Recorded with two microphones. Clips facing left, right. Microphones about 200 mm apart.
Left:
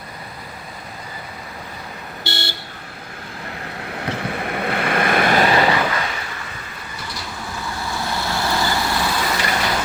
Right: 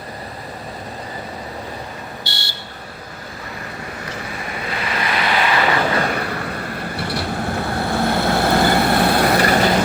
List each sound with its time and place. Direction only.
2.2 s vehicle: 55° left (ahead or behind)
3.9 s vehicle: 60° left (ahead or behind)
6.0 s vehicle: 55° right (ahead or behind)